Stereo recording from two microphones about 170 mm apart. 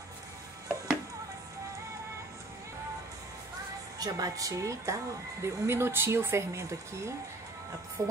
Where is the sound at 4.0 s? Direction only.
20° right (ahead or behind).